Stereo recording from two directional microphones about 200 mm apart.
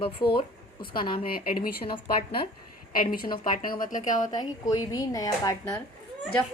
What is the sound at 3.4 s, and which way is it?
Speech, 45° left (ahead or behind).